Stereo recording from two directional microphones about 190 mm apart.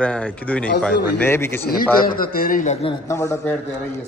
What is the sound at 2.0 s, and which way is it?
Speech, 50° left (ahead or behind).